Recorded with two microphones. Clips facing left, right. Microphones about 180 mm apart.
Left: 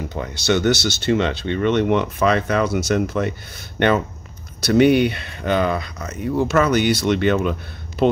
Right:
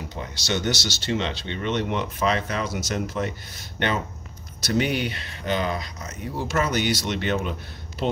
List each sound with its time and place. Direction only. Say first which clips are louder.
0.1 s speech: left 8 dB; 60° left (ahead or behind)
4.6 s speech: left 10 dB; 60° left (ahead or behind)